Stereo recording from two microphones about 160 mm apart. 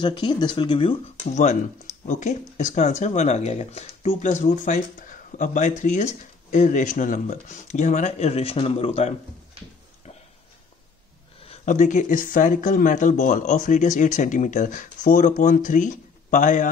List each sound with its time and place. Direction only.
0.0 s speech: 30° left (ahead or behind)
1.3 s speech: 45° left (ahead or behind)
11.4 s a sound: 40° left (ahead or behind)
11.7 s speech: 50° left (ahead or behind)